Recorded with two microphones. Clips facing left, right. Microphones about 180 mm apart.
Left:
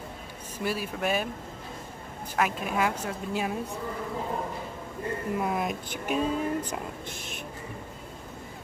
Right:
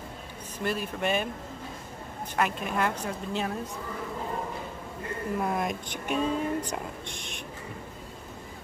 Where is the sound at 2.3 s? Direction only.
Centre (ahead or behind).